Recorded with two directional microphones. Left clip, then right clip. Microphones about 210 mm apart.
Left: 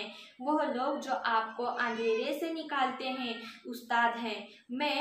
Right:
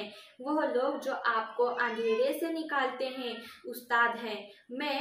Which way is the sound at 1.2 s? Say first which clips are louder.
Right 3 dB; 15° left (ahead or behind).